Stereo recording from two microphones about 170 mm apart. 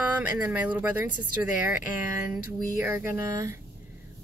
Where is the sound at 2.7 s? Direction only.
15° right (ahead or behind).